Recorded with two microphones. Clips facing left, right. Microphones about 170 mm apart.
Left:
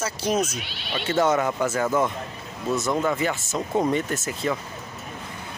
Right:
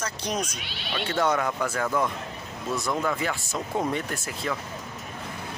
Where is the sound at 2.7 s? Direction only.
20° left (ahead or behind).